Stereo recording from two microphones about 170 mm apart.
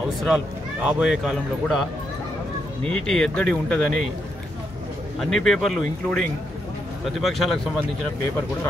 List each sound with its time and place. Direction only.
0.8 s speech: 5° right (ahead or behind)
5.2 s speech: centre (ahead or behind)